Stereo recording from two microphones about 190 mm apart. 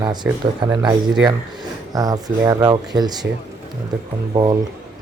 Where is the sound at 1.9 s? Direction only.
20° right (ahead or behind).